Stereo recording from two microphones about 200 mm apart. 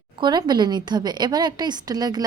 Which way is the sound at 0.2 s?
20° right (ahead or behind).